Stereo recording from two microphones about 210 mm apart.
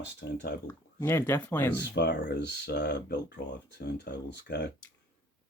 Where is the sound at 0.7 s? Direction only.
10° left (ahead or behind).